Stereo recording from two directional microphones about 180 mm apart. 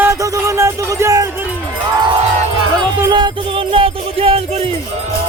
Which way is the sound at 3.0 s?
25° right (ahead or behind).